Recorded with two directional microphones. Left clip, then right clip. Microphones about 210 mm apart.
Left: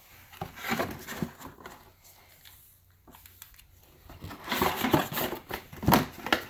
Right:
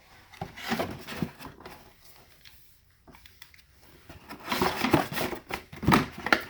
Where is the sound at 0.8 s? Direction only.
10° right (ahead or behind).